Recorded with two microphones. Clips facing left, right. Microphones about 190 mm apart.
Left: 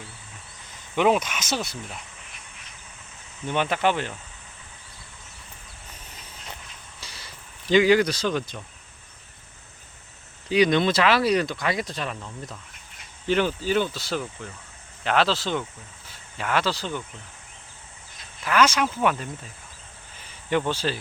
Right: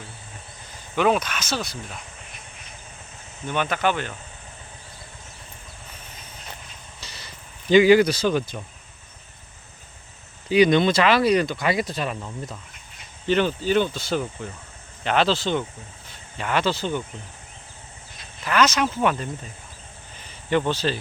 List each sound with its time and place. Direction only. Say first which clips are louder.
0.9 s speech: even; 20° left (ahead or behind)
3.4 s speech: even; 25° left (ahead or behind)
7.0 s vehicle: right 1 dB; 10° left (ahead or behind)
7.7 s speech: right 4 dB; 5° right (ahead or behind)
10.5 s speech: right 3 dB; centre (ahead or behind)
13.2 s speech: right 2 dB; 10° left (ahead or behind)
18.4 s speech: right 1 dB; 10° left (ahead or behind)
20.1 s snake: right 2 dB; 10° left (ahead or behind)